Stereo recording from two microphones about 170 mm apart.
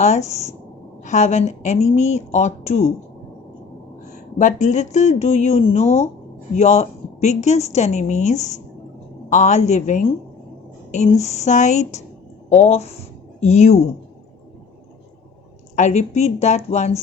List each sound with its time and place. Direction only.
0.0 s speech: 40° left (ahead or behind)
4.4 s speech: 45° left (ahead or behind)
15.7 s speech: 45° left (ahead or behind)